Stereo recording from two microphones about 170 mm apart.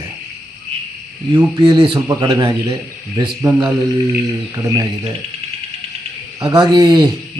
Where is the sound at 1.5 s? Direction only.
25° right (ahead or behind).